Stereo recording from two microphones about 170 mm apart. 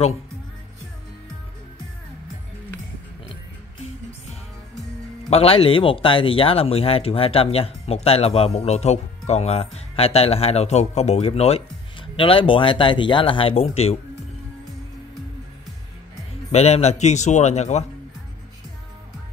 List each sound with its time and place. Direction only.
5.3 s speech: 35° left (ahead or behind)
16.5 s speech: 40° left (ahead or behind)